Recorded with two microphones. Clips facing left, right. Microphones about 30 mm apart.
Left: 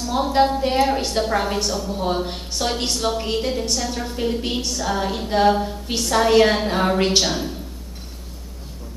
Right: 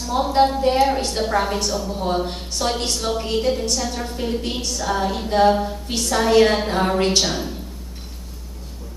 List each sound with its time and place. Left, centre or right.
0.0 s a woman's voice: centre